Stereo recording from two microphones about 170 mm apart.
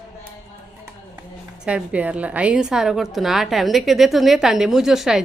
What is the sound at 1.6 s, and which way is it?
A woman's voice, 5° right (ahead or behind).